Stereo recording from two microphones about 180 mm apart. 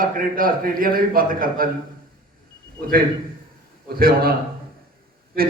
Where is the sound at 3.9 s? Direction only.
55° right (ahead or behind).